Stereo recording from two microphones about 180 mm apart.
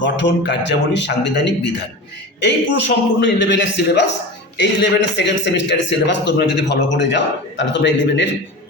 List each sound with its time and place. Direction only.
0.0 s speech: 75° left (ahead or behind)